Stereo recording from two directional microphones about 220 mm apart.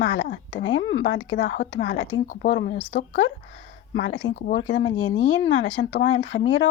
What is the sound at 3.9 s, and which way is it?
Speech, 55° left (ahead or behind).